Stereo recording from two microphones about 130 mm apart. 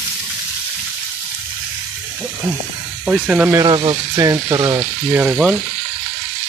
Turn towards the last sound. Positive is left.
turn(degrees=-10)  # may be behind; listen again after turning